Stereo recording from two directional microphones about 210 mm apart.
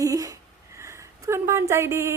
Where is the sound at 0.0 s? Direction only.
15° right (ahead or behind).